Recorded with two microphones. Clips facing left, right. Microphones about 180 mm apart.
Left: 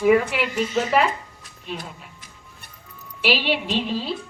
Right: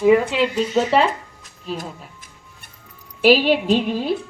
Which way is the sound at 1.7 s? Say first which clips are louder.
Right 5 dB; 45° right (ahead or behind).